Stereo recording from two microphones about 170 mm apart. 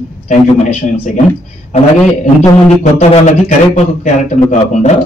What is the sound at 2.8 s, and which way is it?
A man's voice, 45° left (ahead or behind).